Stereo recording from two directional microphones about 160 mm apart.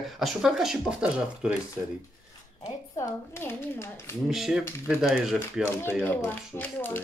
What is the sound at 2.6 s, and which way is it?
Speech, 15° left (ahead or behind).